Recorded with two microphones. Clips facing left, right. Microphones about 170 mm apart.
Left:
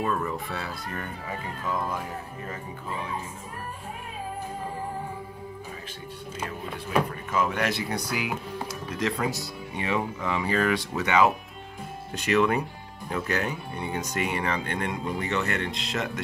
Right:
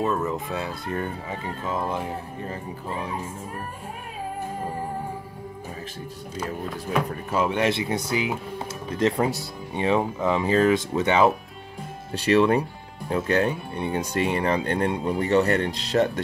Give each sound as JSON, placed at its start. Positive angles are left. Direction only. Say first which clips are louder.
{"t": 0.0, "sound": "speech", "louder": "right 3 dB", "side_deg": -25}
{"t": 7.1, "sound": "speech", "louder": "right 3 dB", "side_deg": -30}